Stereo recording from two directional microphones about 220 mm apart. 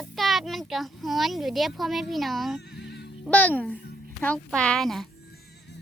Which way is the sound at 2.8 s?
50° left (ahead or behind).